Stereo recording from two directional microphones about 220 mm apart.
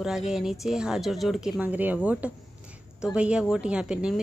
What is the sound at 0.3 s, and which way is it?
A woman's voice, centre (ahead or behind).